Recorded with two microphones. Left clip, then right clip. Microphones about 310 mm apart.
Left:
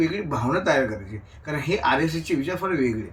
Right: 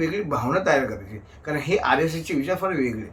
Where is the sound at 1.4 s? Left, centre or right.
Centre.